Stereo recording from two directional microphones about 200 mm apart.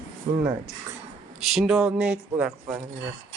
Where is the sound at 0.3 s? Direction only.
15° right (ahead or behind).